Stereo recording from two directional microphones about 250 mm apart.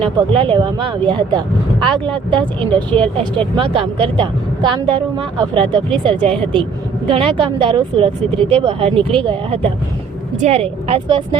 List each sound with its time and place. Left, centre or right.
0.0 s a woman's voice: centre